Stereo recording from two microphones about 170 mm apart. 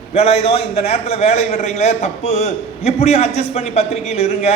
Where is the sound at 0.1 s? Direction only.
40° left (ahead or behind).